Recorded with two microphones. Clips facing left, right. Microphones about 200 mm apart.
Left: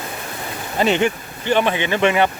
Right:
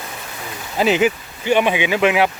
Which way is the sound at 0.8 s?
5° right (ahead or behind).